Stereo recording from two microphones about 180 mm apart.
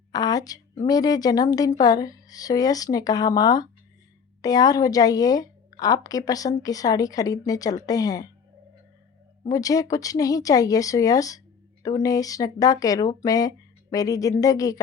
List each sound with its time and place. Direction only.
0.1 s a woman's voice: 20° left (ahead or behind)
9.5 s a woman's voice: 20° left (ahead or behind)